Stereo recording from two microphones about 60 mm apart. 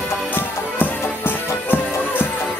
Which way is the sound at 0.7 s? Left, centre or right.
Left.